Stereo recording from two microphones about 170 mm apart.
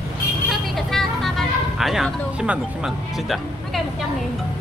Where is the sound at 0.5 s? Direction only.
Centre (ahead or behind).